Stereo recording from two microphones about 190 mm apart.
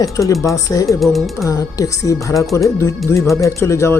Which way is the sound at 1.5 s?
20° left (ahead or behind).